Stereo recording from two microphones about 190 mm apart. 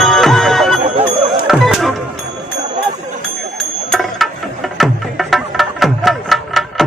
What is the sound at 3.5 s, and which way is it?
Music, centre (ahead or behind).